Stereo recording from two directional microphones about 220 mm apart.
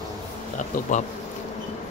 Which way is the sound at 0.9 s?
35° left (ahead or behind).